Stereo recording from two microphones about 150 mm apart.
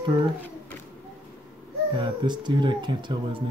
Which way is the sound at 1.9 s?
30° right (ahead or behind).